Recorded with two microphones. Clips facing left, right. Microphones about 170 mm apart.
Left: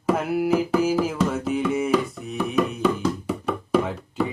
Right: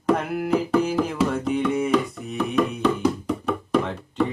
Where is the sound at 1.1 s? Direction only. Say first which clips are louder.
Right 1 dB; centre (ahead or behind).